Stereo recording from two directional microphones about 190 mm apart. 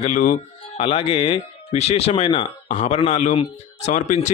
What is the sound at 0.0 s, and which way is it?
Speech, 40° left (ahead or behind).